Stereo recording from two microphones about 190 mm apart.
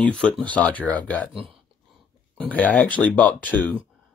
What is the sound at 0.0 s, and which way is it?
Speech, 5° left (ahead or behind).